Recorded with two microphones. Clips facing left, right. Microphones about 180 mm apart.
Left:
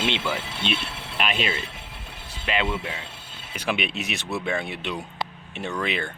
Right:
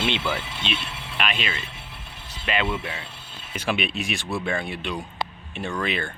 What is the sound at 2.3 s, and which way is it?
Speech, 15° left (ahead or behind).